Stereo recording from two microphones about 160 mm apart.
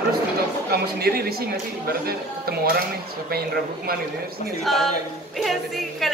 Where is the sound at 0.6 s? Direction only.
75° right (ahead or behind).